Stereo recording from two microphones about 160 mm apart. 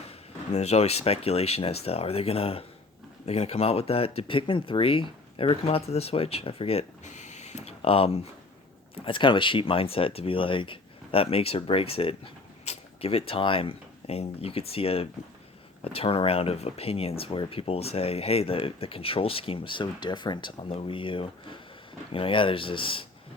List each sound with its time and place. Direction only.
0.1 s speech: 40° left (ahead or behind)